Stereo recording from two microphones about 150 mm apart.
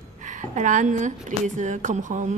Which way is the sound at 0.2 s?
55° right (ahead or behind).